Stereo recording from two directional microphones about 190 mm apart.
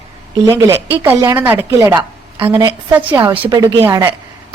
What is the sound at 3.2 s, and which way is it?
Speech, 25° right (ahead or behind).